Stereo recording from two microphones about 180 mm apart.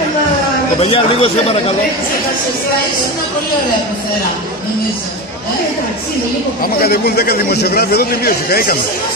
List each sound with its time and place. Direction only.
0.7 s speech: 30° left (ahead or behind)
6.6 s a man's voice: 60° left (ahead or behind)